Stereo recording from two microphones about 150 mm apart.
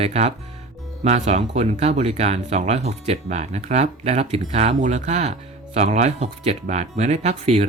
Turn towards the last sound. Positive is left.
turn(degrees=-45)  # may be behind; listen again after turning